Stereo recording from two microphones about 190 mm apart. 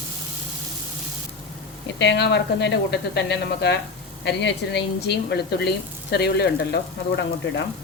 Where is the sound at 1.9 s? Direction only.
65° left (ahead or behind).